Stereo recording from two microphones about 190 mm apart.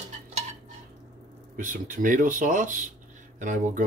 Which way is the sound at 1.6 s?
45° right (ahead or behind).